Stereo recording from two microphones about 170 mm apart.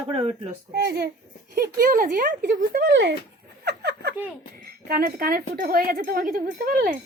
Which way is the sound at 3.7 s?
70° right (ahead or behind).